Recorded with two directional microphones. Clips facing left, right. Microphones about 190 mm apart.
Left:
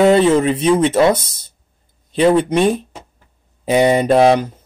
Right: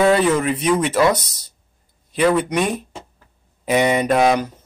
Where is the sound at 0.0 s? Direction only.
25° left (ahead or behind).